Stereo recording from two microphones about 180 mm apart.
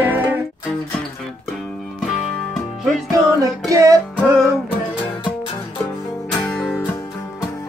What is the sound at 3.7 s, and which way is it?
Music, 15° right (ahead or behind).